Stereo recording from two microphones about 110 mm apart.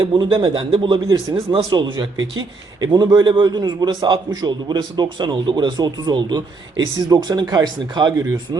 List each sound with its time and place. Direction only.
0.0 s a man's voice: 45° right (ahead or behind)